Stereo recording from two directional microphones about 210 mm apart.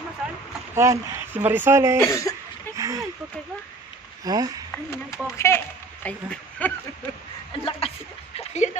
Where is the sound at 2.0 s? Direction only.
15° left (ahead or behind).